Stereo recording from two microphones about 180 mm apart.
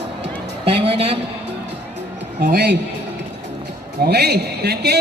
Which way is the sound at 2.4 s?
55° right (ahead or behind).